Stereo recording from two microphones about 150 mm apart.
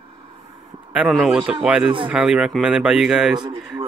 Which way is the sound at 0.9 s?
10° right (ahead or behind).